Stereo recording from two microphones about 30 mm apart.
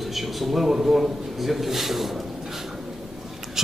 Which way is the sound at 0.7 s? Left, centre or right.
Centre.